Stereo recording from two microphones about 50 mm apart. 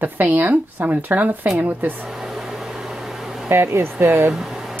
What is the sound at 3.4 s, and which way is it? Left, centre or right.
Speech, right.